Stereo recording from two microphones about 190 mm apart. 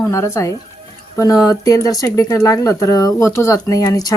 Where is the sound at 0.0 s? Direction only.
15° left (ahead or behind).